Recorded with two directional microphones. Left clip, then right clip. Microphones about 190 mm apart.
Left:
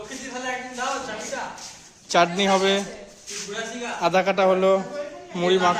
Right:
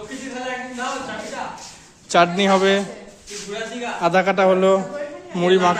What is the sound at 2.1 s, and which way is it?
Speech, centre (ahead or behind).